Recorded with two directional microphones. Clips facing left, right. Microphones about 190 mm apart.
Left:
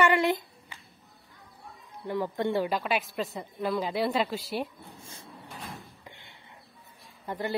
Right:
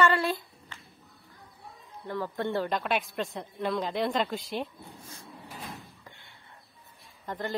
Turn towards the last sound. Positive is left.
turn(degrees=10)  # may be behind; listen again after turning